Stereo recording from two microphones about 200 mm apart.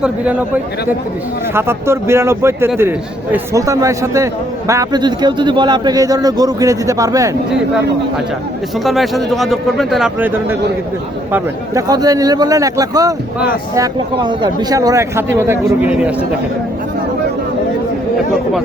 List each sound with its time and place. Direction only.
0.0 s a man's voice: 5° right (ahead or behind)
8.8 s a man's voice: centre (ahead or behind)